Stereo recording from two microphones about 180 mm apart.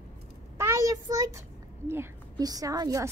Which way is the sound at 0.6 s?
15° right (ahead or behind).